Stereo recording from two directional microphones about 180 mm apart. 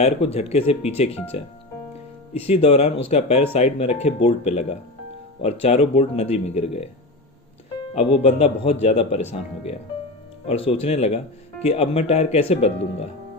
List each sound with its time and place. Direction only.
0.0 s speech: 35° left (ahead or behind)
2.3 s speech: 35° left (ahead or behind)
7.9 s speech: 35° left (ahead or behind)
10.7 s speech: 35° left (ahead or behind)